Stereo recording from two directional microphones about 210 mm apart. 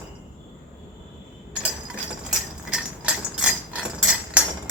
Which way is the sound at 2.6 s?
5° right (ahead or behind).